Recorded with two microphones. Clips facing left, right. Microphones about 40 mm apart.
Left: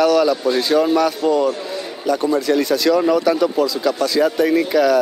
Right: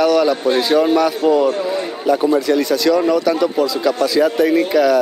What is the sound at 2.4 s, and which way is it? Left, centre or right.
Speech, centre.